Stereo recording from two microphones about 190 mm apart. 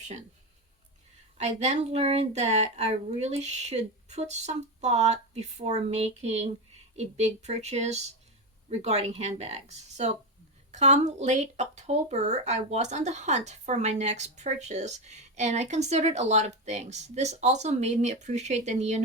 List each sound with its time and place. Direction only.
1.4 s speech: 35° right (ahead or behind)